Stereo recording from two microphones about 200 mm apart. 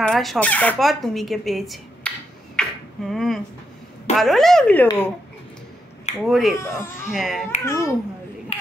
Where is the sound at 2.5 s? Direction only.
Centre (ahead or behind).